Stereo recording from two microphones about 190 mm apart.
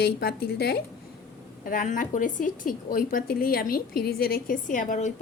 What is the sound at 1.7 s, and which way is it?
A woman's voice, 45° left (ahead or behind).